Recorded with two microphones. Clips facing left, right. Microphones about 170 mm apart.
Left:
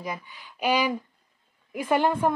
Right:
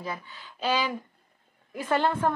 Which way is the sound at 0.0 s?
15° left (ahead or behind).